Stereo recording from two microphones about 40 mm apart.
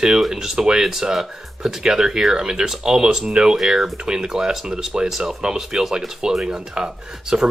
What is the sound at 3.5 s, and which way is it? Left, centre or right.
Speech, centre.